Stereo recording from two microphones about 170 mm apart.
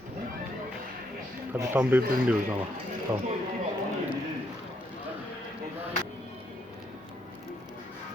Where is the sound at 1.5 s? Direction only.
10° right (ahead or behind).